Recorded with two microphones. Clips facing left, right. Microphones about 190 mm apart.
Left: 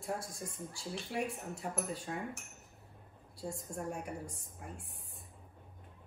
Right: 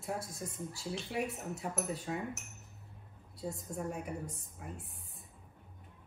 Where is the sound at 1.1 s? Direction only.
Centre (ahead or behind).